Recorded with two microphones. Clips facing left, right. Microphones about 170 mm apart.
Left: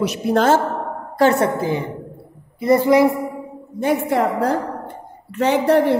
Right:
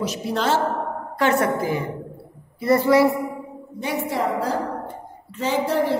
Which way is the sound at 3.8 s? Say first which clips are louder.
Left 6 dB; 55° left (ahead or behind).